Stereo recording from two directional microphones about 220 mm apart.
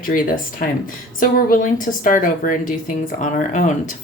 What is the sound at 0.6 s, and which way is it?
Speech, 40° left (ahead or behind).